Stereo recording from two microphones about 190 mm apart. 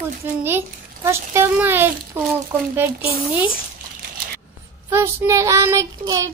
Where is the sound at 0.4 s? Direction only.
10° right (ahead or behind).